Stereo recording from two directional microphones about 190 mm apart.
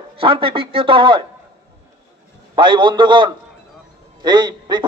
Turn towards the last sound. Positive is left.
turn(degrees=-20)  # may be behind; listen again after turning